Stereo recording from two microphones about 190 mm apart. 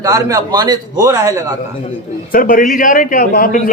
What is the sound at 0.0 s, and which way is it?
A man's voice, 15° right (ahead or behind).